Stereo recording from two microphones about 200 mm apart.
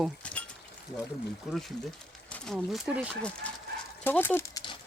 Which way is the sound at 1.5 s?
Centre (ahead or behind).